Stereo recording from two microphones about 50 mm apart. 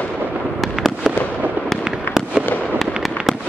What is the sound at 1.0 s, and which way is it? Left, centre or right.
Fireworks, centre.